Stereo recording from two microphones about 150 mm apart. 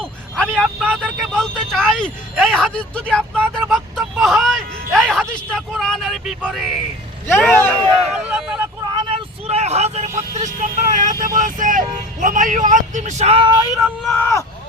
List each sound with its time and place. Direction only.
0.0 s vehicle: 5° left (ahead or behind)
0.9 s vehicle: 10° right (ahead or behind)
1.3 s speech: centre (ahead or behind)
7.3 s speech: 15° left (ahead or behind)
8.1 s speech: 5° right (ahead or behind)
8.9 s vehicle: 35° right (ahead or behind); by 11.3 s 60° right (ahead or behind)
11.3 s speech: 60° right (ahead or behind); by 13.7 s 30° right (ahead or behind)
14.2 s speech: 20° left (ahead or behind)